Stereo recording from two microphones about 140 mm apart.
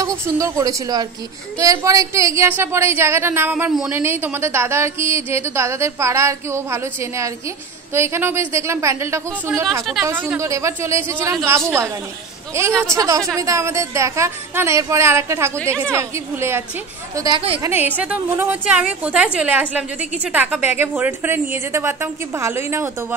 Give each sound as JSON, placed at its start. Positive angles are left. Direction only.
{"t": 0.2, "sound": "a woman's voice", "side_deg": -20}